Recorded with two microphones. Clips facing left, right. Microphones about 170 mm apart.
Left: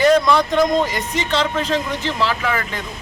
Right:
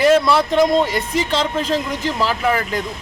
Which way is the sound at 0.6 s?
35° right (ahead or behind).